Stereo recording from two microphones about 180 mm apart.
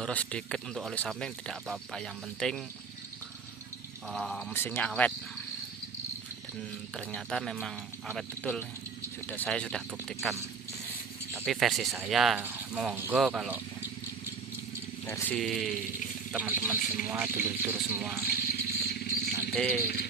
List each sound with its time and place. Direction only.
0.0 s speech: 5° left (ahead or behind)
4.1 s speech: centre (ahead or behind)
7.0 s speech: 5° left (ahead or behind)
11.4 s speech: centre (ahead or behind)
15.0 s speech: 15° left (ahead or behind)
15.3 s a man's voice: centre (ahead or behind)
18.2 s vehicle: 55° left (ahead or behind)
19.5 s speech: 5° left (ahead or behind)